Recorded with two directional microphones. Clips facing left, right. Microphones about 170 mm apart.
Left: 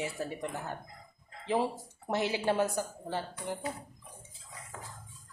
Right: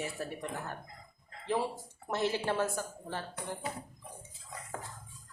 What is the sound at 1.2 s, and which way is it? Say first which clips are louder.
Dog: left 2 dB; 15° left (ahead or behind).